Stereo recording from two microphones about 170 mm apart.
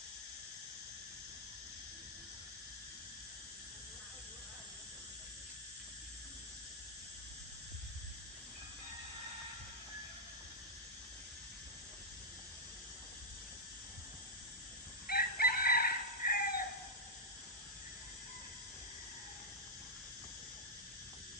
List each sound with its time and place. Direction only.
15.0 s chicken: 60° left (ahead or behind)